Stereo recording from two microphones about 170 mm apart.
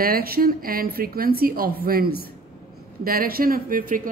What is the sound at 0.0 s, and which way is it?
A man's voice, 60° right (ahead or behind).